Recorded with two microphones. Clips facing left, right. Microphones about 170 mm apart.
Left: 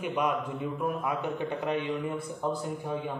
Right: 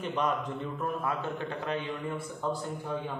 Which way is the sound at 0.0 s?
10° left (ahead or behind).